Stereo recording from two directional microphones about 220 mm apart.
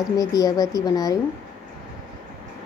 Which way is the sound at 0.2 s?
15° left (ahead or behind).